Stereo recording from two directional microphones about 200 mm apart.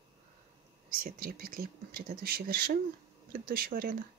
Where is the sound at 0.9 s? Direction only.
45° right (ahead or behind).